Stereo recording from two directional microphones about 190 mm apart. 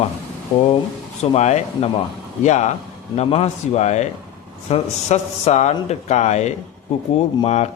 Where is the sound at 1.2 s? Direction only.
35° left (ahead or behind).